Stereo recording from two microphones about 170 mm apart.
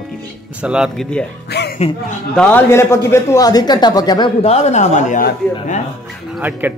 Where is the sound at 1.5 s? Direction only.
75° left (ahead or behind).